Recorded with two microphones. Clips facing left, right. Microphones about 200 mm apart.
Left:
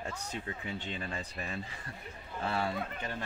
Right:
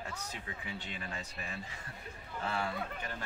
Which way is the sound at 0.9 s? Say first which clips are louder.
Left 4 dB; 30° left (ahead or behind).